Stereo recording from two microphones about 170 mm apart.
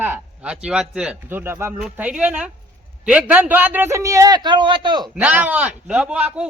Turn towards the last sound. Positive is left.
turn(degrees=-5)  # may be behind; listen again after turning